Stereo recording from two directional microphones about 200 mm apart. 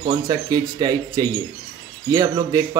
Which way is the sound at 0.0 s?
20° right (ahead or behind).